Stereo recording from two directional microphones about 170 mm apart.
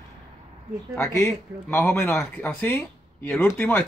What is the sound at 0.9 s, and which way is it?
Speech, 10° left (ahead or behind).